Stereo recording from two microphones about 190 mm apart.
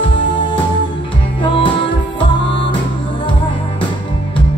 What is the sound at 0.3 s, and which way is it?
Music, 25° left (ahead or behind).